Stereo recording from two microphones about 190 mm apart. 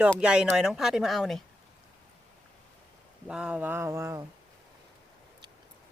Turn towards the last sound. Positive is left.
turn(degrees=-15)  # may be behind; listen again after turning